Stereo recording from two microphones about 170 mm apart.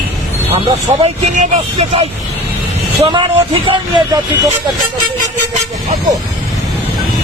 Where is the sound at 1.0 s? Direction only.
50° right (ahead or behind).